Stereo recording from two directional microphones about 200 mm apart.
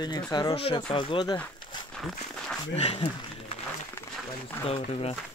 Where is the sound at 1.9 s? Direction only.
Centre (ahead or behind).